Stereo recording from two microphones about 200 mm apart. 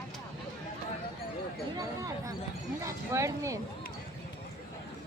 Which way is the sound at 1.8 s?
15° right (ahead or behind).